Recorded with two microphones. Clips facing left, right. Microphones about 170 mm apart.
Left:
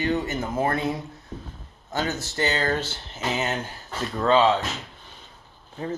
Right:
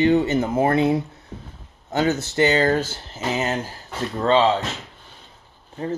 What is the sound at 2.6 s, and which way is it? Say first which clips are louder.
Speech: right 6 dB; 45° right (ahead or behind).